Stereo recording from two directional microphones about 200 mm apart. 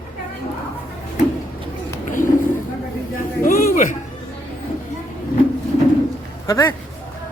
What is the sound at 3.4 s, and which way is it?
Speech, 40° left (ahead or behind).